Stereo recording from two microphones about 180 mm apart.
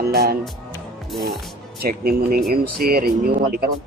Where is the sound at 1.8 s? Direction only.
55° right (ahead or behind).